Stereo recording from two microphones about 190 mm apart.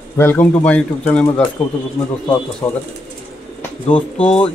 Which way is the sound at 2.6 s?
15° left (ahead or behind).